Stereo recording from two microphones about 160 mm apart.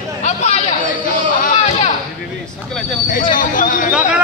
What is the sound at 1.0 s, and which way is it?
Chatter, 55° left (ahead or behind).